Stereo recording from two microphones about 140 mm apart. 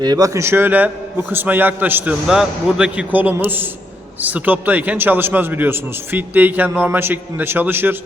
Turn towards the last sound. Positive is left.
turn(degrees=-15)  # may be behind; listen again after turning